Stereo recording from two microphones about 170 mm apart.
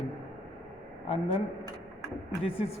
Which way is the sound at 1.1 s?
35° left (ahead or behind).